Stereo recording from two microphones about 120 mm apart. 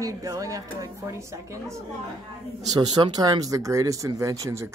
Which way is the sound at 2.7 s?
40° right (ahead or behind).